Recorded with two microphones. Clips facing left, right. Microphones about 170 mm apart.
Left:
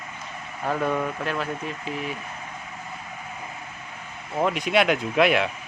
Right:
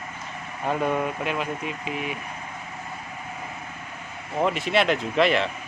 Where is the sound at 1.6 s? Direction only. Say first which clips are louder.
Even; 35° left (ahead or behind).